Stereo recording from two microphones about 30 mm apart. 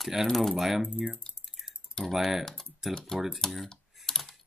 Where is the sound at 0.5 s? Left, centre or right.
Centre.